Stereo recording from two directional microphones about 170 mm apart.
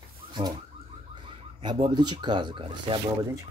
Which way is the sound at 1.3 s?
35° right (ahead or behind).